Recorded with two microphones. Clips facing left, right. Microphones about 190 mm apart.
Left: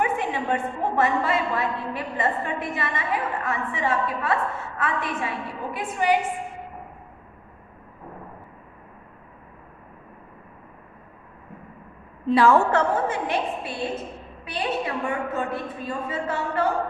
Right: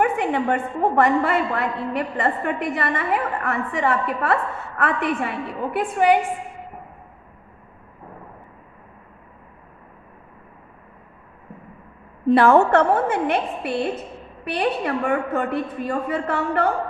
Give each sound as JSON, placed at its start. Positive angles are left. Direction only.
{"t": 0.0, "sound": "a sound", "side_deg": -60}
{"t": 0.9, "sound": "a woman's voice", "side_deg": -60}
{"t": 12.3, "sound": "a woman's voice", "side_deg": -60}